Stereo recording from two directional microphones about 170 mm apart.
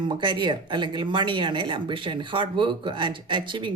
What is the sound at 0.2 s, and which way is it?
Speech, 25° right (ahead or behind).